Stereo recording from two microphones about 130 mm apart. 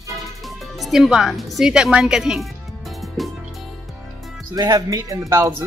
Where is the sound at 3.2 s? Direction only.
Centre (ahead or behind).